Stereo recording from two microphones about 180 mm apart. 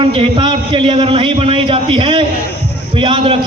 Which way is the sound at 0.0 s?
30° right (ahead or behind).